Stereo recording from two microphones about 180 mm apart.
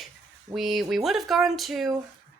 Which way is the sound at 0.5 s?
Centre (ahead or behind).